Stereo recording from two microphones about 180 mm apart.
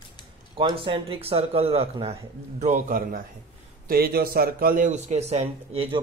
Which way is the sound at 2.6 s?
50° right (ahead or behind).